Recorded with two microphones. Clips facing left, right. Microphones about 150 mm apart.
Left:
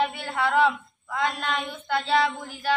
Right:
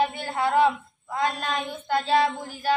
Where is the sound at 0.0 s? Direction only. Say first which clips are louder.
Right 1 dB; 40° right (ahead or behind).